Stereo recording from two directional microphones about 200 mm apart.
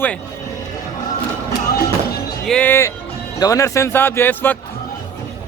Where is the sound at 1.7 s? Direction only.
50° left (ahead or behind).